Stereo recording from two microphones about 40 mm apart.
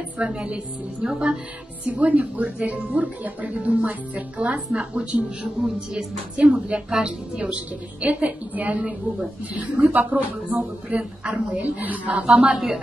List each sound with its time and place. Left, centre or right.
0.2 s speech: right
1.9 s a woman's voice: right
9.9 s a woman's voice: right
12.5 s a woman's voice: centre